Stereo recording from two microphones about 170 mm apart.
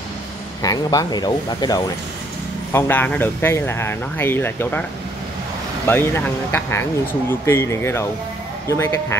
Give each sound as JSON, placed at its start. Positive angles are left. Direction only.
{"t": 0.6, "sound": "speech", "side_deg": 20}
{"t": 2.7, "sound": "speech", "side_deg": 10}
{"t": 5.9, "sound": "speech", "side_deg": 10}